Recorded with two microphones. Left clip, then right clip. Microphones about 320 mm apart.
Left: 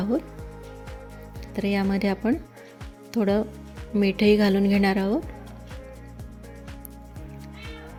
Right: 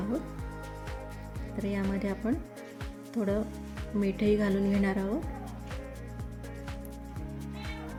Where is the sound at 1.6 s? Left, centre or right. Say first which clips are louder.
Left 8 dB; left.